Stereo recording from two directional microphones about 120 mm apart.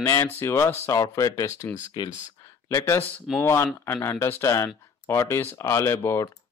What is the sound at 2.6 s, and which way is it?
Speech, 20° left (ahead or behind).